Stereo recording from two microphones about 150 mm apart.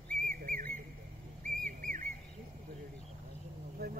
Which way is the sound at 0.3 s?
70° right (ahead or behind).